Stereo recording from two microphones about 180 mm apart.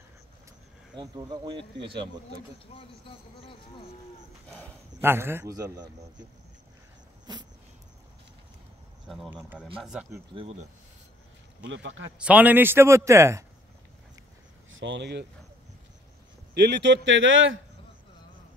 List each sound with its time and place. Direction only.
0.9 s speech: 25° right (ahead or behind)
2.7 s speech: 30° left (ahead or behind)
4.5 s speech: 10° left (ahead or behind)
5.0 s a man's voice: 15° right (ahead or behind)
9.0 s speech: centre (ahead or behind)
10.3 s speech: 35° right (ahead or behind)
11.7 s speech: 90° right
12.2 s a man's voice: 10° right (ahead or behind)
14.7 s speech: 90° right; by 15.2 s 70° right (ahead or behind)
16.5 s speech: 70° right (ahead or behind); by 17.6 s 90° right